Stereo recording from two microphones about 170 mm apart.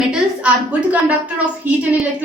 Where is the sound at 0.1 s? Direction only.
10° right (ahead or behind).